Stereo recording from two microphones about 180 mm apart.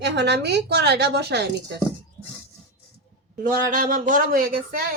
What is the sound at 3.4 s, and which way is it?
Speech, 50° right (ahead or behind).